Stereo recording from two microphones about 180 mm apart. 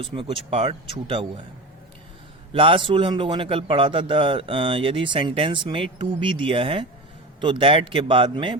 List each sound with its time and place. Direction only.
0.0 s a man's voice: 25° right (ahead or behind)
2.5 s a man's voice: 30° right (ahead or behind)